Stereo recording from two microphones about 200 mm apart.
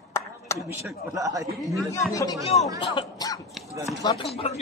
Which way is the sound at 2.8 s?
20° left (ahead or behind).